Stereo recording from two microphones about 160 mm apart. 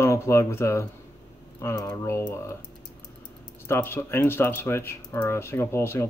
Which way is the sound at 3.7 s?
15° left (ahead or behind).